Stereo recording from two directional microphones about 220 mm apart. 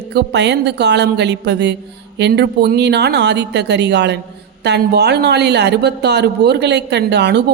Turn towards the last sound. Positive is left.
turn(degrees=-50)  # may be behind; listen again after turning